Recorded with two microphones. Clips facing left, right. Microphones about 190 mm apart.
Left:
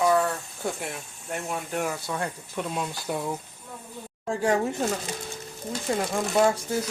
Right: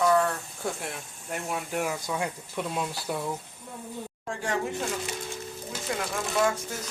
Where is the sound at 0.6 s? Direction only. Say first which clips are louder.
Left 2 dB; centre (ahead or behind).